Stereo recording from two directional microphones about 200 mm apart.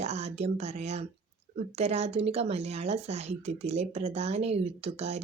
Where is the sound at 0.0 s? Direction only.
35° right (ahead or behind).